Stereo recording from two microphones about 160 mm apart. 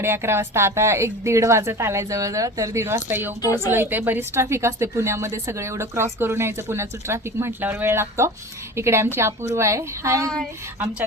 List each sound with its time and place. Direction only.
0.0 s a woman's voice: 15° right (ahead or behind)